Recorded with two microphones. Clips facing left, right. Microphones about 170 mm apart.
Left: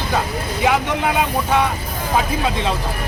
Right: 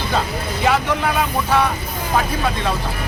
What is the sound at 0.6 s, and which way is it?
Speech, 10° left (ahead or behind).